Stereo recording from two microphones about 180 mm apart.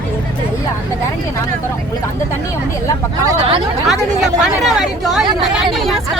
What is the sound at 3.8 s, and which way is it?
Chatter, centre (ahead or behind).